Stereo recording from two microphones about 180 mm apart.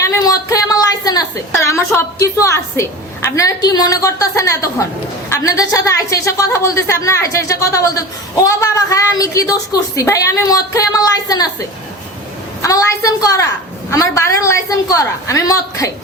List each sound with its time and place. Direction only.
0.0 s a sound: 15° left (ahead or behind)
3.2 s a woman's voice: 20° left (ahead or behind)
12.6 s a woman's voice: 20° left (ahead or behind)